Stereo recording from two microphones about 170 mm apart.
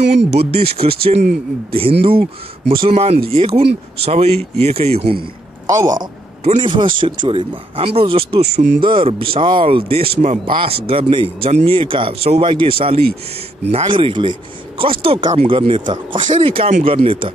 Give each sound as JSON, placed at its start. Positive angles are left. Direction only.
{"t": 0.2, "sound": "speech", "side_deg": -75}
{"t": 0.6, "sound": "speech", "side_deg": -35}
{"t": 5.9, "sound": "a man's voice", "side_deg": -50}
{"t": 6.5, "sound": "speech", "side_deg": -30}